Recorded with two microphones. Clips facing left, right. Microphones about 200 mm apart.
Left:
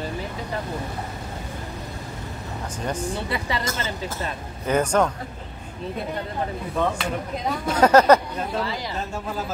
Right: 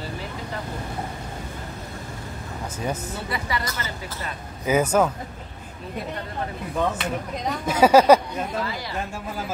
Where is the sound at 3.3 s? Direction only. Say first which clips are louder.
Left 2 dB; 25° left (ahead or behind).